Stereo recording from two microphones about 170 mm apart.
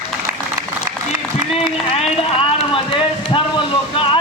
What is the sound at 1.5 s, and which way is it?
Speech, 35° left (ahead or behind).